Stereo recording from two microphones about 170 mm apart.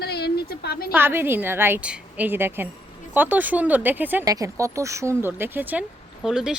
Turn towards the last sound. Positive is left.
turn(degrees=-5)  # may be behind; listen again after turning